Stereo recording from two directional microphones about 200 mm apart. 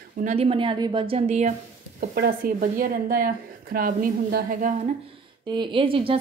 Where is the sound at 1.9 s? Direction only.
45° right (ahead or behind).